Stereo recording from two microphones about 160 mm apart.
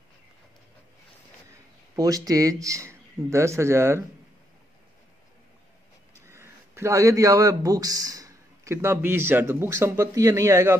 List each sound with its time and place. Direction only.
2.0 s speech: 20° right (ahead or behind)
6.2 s speech: 15° right (ahead or behind)